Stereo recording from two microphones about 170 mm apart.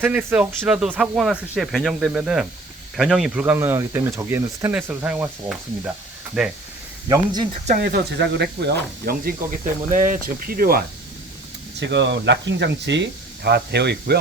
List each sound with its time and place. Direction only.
0.0 s speech: 10° right (ahead or behind)
7.1 s speech: 25° right (ahead or behind)
7.8 s speech: 70° right (ahead or behind)
9.9 s speech: 50° right (ahead or behind)
11.8 s speech: 90° right; by 14.2 s 75° right (ahead or behind)